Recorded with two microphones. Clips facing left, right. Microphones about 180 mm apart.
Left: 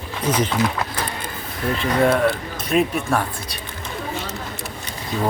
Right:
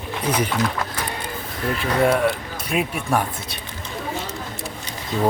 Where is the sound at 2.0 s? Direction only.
10° right (ahead or behind).